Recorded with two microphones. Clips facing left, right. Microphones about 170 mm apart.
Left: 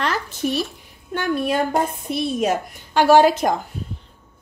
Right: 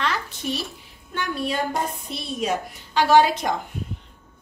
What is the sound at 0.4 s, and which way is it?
A woman's voice, 50° left (ahead or behind).